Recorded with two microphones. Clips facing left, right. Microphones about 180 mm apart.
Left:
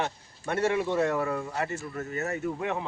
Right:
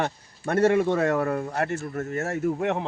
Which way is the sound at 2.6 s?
70° right (ahead or behind).